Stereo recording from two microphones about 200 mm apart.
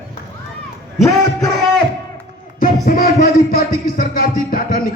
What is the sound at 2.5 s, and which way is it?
A man's voice, 50° left (ahead or behind).